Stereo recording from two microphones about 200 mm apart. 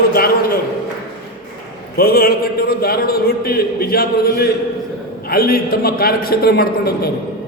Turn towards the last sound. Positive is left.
turn(degrees=50)  # may be behind; listen again after turning